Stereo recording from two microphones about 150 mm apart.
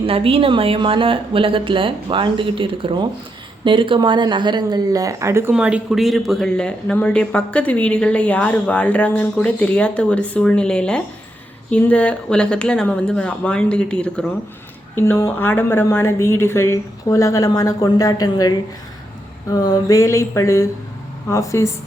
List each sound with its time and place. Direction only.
0.0 s a woman's voice: 40° right (ahead or behind); by 5.5 s 15° right (ahead or behind)
5.5 s speech: 5° right (ahead or behind); by 21.7 s 20° left (ahead or behind)